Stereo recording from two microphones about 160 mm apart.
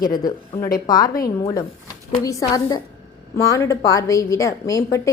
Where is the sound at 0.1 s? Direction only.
25° left (ahead or behind).